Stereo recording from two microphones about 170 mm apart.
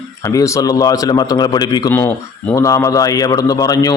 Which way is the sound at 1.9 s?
10° left (ahead or behind).